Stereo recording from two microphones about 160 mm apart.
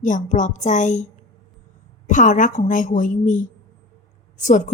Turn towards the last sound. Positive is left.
turn(degrees=50)  # may be behind; listen again after turning